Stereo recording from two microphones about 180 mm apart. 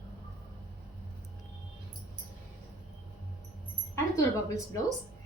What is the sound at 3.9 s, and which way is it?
Speech, 15° left (ahead or behind).